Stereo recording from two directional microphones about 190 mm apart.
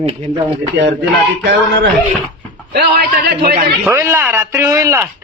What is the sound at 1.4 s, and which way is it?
Speech, 75° right (ahead or behind).